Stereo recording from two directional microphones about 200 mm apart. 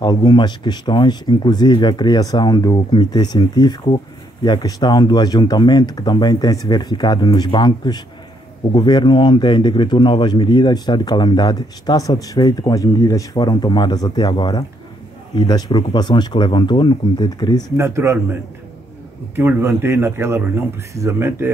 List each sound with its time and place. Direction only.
0.0 s speech: 20° left (ahead or behind)
17.7 s a man's voice: 15° right (ahead or behind)
19.3 s a man's voice: 10° right (ahead or behind)